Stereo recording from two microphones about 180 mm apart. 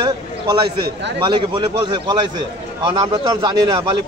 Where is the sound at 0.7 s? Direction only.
65° right (ahead or behind).